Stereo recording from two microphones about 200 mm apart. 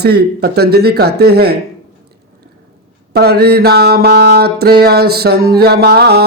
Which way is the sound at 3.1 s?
50° right (ahead or behind).